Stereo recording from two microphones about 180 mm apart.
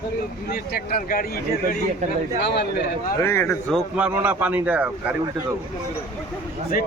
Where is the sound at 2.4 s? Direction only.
65° left (ahead or behind).